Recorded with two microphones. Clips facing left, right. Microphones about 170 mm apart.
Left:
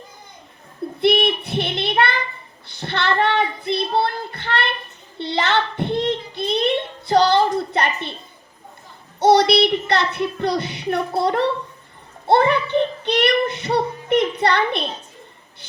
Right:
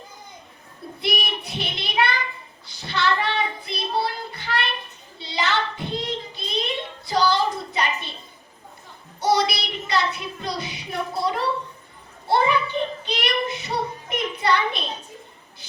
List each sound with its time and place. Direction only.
1.0 s child singing: 60° left (ahead or behind)
5.1 s a sound: 60° left (ahead or behind)
9.2 s a child's voice: 65° left (ahead or behind)